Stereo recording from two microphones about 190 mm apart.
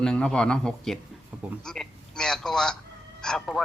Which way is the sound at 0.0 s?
5° left (ahead or behind).